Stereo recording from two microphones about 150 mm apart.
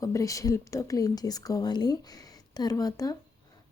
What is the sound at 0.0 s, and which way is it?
A woman's voice, 20° left (ahead or behind).